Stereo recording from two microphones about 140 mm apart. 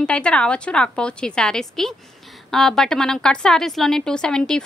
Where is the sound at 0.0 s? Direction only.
5° left (ahead or behind).